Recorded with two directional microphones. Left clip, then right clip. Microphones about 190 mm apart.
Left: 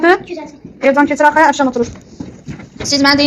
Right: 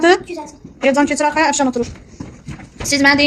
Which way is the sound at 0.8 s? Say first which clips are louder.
Left 4 dB; 30° right (ahead or behind).